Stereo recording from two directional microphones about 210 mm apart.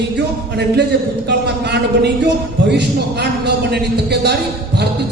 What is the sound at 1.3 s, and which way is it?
Speech, 50° right (ahead or behind).